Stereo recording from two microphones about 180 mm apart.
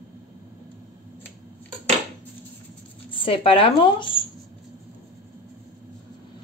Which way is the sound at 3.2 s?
30° left (ahead or behind).